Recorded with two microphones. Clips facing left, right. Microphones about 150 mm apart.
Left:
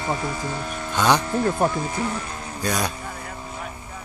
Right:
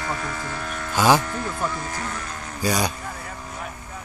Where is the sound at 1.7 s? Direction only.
20° left (ahead or behind).